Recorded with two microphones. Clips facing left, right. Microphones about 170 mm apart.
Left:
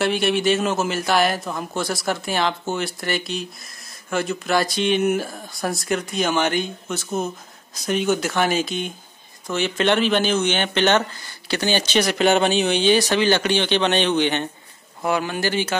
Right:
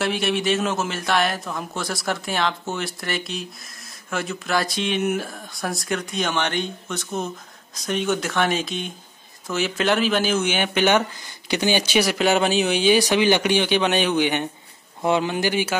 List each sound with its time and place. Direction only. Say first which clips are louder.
0.0 s a man's voice: left 3 dB; centre (ahead or behind)